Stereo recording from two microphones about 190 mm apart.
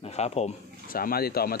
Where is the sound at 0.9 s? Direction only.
50° left (ahead or behind).